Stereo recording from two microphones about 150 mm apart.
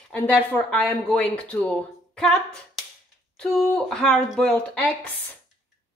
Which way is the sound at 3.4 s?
5° left (ahead or behind).